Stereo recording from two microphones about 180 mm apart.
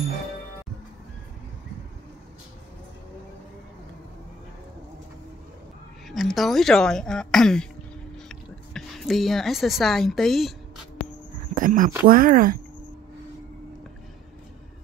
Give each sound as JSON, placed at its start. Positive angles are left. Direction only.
{"t": 6.0, "sound": "speech", "side_deg": 0}
{"t": 11.5, "sound": "a sound", "side_deg": -50}
{"t": 12.1, "sound": "speech", "side_deg": -50}